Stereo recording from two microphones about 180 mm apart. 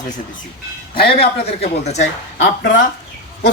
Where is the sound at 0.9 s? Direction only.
30° left (ahead or behind).